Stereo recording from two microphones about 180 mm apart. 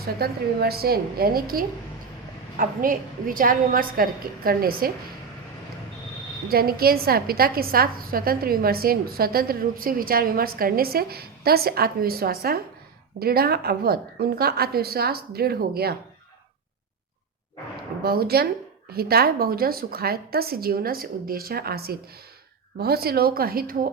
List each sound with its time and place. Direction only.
0.0 s a woman's voice: 60° right (ahead or behind)
6.5 s a woman's voice: 55° right (ahead or behind)
18.0 s a woman's voice: 60° right (ahead or behind)